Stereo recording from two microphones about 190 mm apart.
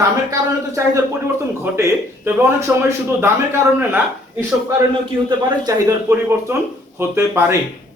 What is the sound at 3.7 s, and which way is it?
Speech, 10° right (ahead or behind).